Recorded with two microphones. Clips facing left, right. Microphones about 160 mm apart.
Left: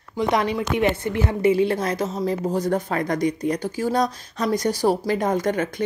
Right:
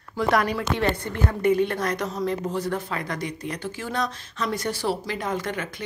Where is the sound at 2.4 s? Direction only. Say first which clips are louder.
Left 5 dB; 40° left (ahead or behind).